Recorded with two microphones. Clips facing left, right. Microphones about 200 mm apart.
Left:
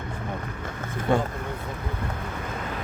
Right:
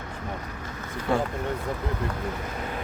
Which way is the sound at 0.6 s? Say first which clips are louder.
Left 2 dB; 50° left (ahead or behind).